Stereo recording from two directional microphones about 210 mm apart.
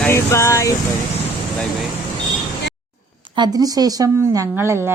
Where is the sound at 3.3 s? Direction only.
20° right (ahead or behind).